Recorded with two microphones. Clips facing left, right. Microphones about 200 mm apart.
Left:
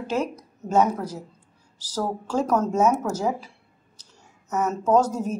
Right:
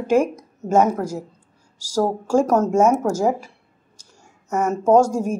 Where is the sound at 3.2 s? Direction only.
45° right (ahead or behind).